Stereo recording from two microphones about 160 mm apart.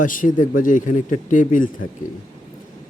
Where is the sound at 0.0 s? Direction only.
55° left (ahead or behind).